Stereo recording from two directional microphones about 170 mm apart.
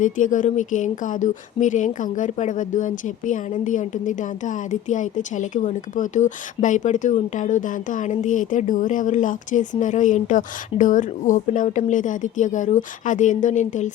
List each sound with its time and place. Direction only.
0.0 s speech: 50° left (ahead or behind)